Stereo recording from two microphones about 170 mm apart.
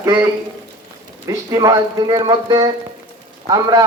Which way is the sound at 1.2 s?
20° right (ahead or behind).